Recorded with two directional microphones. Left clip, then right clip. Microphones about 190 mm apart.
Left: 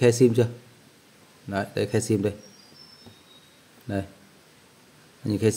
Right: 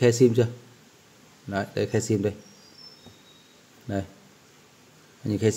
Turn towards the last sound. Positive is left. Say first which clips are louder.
# left 1 dB
turn(degrees=10)  # may be behind; listen again after turning